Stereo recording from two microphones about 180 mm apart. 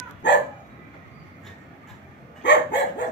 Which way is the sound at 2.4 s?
75° left (ahead or behind).